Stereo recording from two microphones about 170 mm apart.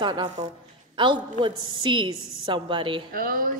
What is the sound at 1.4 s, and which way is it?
A woman's voice, 25° right (ahead or behind).